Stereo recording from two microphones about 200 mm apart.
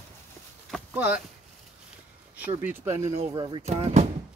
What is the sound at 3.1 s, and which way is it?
Speech, 30° right (ahead or behind).